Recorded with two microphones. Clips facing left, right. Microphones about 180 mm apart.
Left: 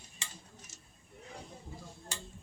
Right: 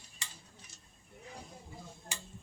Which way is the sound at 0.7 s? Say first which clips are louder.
Left 3 dB; 45° left (ahead or behind).